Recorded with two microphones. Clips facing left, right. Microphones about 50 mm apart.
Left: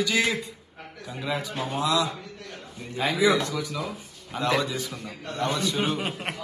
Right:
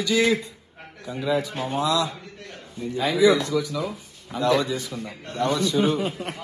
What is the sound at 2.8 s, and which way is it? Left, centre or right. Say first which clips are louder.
A man's voice: right 4 dB; left.